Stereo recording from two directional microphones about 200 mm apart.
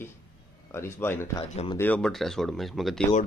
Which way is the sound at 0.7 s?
15° left (ahead or behind).